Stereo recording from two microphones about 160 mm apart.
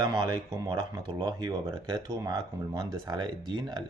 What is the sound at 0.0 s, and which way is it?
Speech, 30° right (ahead or behind).